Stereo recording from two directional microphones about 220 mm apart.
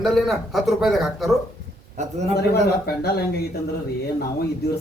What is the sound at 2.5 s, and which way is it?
Speech, 45° left (ahead or behind).